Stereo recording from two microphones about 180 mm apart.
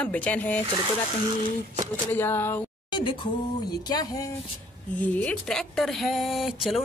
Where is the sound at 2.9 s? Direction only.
25° left (ahead or behind).